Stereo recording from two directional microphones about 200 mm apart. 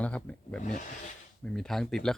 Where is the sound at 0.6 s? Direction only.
35° left (ahead or behind).